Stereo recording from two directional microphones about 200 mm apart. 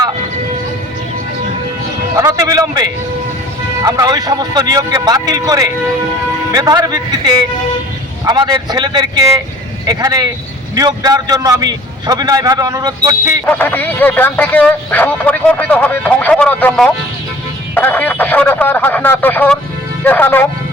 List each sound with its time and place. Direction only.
2.1 s music: 15° right (ahead or behind)
3.8 s a man's voice: 20° right (ahead or behind)
13.4 s speech: 5° left (ahead or behind)